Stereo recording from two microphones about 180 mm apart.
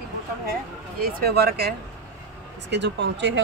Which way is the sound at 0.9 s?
60° right (ahead or behind).